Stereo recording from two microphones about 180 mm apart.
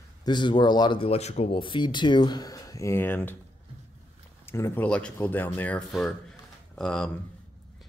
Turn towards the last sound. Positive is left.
turn(degrees=5)  # may be behind; listen again after turning